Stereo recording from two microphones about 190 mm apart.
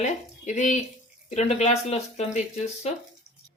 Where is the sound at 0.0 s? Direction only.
40° left (ahead or behind).